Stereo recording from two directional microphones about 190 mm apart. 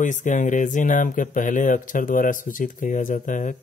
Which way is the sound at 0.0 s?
40° left (ahead or behind).